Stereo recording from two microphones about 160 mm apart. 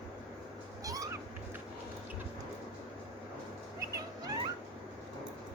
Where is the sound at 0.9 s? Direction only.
20° right (ahead or behind).